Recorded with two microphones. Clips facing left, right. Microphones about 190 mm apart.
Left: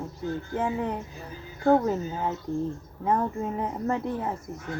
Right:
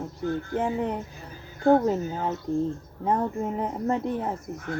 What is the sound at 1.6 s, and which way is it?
Speech, 20° right (ahead or behind).